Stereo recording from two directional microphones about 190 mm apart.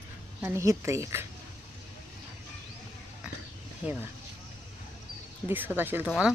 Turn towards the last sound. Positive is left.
turn(degrees=-5)  # may be behind; listen again after turning